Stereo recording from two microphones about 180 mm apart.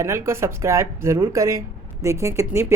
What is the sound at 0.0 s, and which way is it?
Speech, 15° right (ahead or behind).